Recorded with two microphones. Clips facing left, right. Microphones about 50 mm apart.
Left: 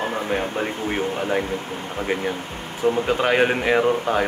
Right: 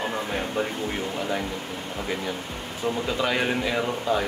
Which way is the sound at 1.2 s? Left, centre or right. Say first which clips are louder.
Left 3 dB; left.